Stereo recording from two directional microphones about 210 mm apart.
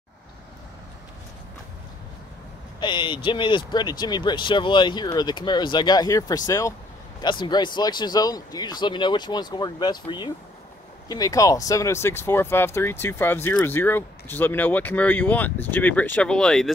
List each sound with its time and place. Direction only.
2.8 s speech: 20° left (ahead or behind); by 16.7 s centre (ahead or behind)